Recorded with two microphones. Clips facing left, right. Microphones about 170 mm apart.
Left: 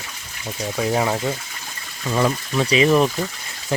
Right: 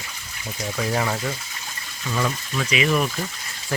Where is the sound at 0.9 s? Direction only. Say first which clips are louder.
Left 4 dB; 20° left (ahead or behind).